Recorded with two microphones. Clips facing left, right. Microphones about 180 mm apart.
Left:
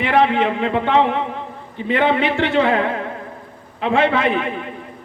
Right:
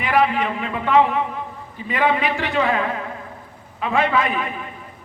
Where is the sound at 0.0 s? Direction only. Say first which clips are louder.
Left 3 dB; 25° left (ahead or behind).